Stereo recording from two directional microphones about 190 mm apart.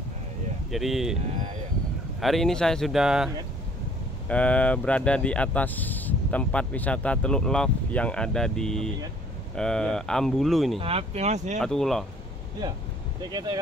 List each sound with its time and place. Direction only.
0.7 s speech: centre (ahead or behind)
2.1 s speech: centre (ahead or behind)
4.3 s speech: 5° left (ahead or behind)
10.8 s speech: 30° right (ahead or behind)
11.6 s speech: centre (ahead or behind)
13.3 s speech: 20° right (ahead or behind)